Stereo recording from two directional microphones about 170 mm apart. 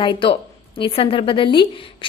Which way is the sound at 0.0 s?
30° left (ahead or behind).